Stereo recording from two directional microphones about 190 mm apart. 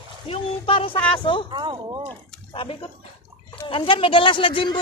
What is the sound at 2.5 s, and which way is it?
Speech, 30° left (ahead or behind).